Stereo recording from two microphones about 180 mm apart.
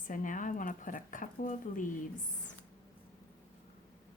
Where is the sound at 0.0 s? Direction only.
50° left (ahead or behind).